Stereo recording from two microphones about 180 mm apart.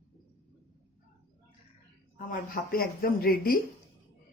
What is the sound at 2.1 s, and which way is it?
A woman's voice, 50° left (ahead or behind).